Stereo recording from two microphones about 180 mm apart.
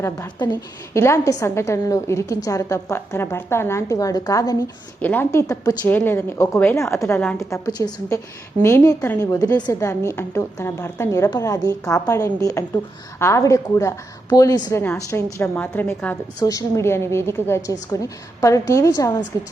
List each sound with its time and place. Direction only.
0.0 s a woman's voice: 20° left (ahead or behind)
7.2 s a woman's voice: 5° left (ahead or behind)
7.5 s a woman's voice: 20° left (ahead or behind)